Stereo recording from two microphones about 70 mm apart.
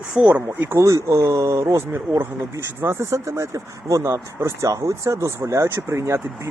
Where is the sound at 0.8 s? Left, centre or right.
Right.